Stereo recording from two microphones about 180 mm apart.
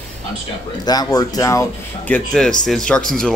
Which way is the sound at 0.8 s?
20° left (ahead or behind).